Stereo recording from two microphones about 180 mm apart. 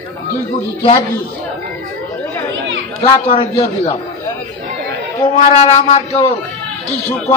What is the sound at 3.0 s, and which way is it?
Speech, 30° left (ahead or behind).